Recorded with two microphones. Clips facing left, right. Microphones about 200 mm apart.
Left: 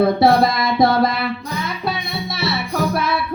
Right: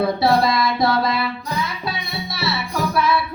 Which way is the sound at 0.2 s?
55° left (ahead or behind).